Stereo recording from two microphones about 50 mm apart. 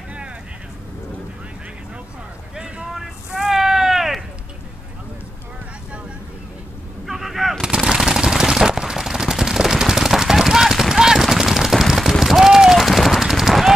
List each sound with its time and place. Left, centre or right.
2.5 s boat: centre
2.9 s vehicle: centre
7.1 s artillery fire: centre
7.6 s machine gun: centre